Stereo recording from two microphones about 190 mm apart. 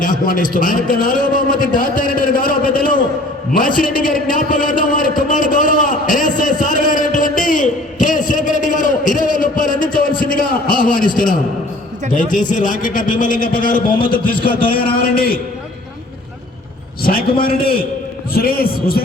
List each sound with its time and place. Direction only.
0.0 s a man's voice: 45° left (ahead or behind)
3.8 s a sound: 45° left (ahead or behind)
12.1 s a man's voice: 45° left (ahead or behind)
17.0 s a man's voice: 50° left (ahead or behind)